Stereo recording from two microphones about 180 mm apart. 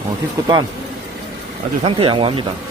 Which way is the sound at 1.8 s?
30° right (ahead or behind).